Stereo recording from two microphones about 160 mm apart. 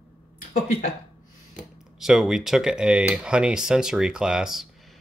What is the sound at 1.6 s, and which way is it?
Speech, 5° right (ahead or behind).